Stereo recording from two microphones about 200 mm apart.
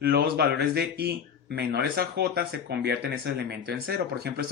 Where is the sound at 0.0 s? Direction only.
50° right (ahead or behind).